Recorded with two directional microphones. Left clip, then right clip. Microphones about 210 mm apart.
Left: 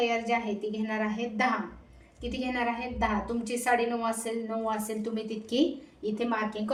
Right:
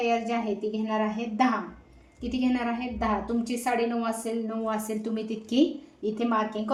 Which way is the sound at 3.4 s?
30° right (ahead or behind).